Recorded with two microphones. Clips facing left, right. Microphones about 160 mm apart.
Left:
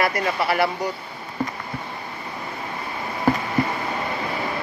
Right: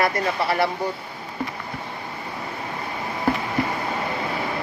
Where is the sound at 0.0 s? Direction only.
25° right (ahead or behind).